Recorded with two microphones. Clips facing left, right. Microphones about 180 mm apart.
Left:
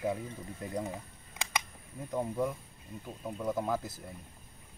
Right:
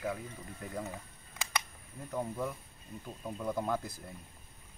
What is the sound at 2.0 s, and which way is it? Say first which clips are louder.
Speech: left 4 dB; 10° left (ahead or behind).